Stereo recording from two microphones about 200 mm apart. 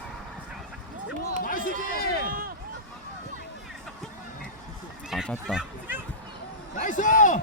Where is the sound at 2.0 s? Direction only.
50° left (ahead or behind).